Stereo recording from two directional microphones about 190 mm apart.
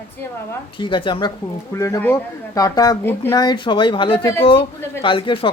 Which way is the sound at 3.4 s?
25° left (ahead or behind).